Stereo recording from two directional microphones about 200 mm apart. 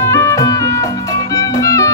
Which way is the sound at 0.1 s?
15° left (ahead or behind).